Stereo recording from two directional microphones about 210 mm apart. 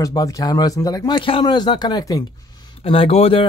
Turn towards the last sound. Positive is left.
turn(degrees=25)  # may be behind; listen again after turning